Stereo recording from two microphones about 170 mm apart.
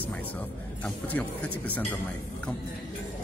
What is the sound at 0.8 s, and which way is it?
Speech, 10° left (ahead or behind).